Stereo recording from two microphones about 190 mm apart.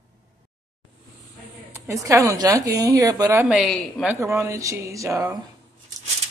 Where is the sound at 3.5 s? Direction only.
Centre (ahead or behind).